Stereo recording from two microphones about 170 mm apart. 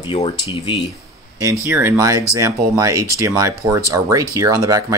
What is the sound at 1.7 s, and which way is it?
Speech, 15° right (ahead or behind).